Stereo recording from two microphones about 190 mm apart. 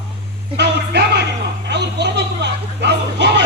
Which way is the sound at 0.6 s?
60° right (ahead or behind).